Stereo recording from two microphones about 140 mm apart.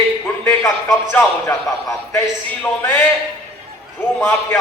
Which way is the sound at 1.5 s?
25° left (ahead or behind).